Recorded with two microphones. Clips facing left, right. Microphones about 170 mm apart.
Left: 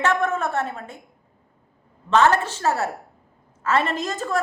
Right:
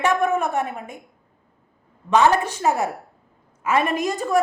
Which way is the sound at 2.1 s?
15° right (ahead or behind).